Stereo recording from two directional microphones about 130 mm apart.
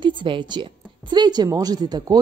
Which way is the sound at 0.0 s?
40° right (ahead or behind).